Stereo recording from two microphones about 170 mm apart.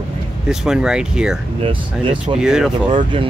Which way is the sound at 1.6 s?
30° right (ahead or behind).